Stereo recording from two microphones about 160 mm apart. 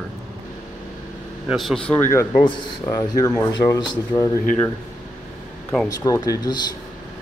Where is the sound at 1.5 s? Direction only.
Centre (ahead or behind).